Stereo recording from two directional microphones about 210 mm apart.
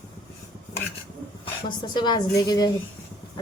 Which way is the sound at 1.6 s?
20° left (ahead or behind).